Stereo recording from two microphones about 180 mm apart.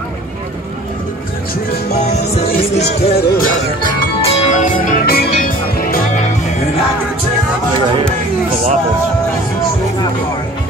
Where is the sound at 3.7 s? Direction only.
25° left (ahead or behind); by 5.2 s 55° left (ahead or behind).